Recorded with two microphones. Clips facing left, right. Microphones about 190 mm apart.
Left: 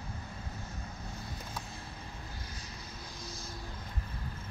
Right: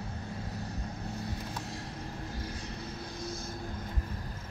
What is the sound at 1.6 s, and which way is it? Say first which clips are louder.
Vehicle: right 6 dB; 75° right (ahead or behind).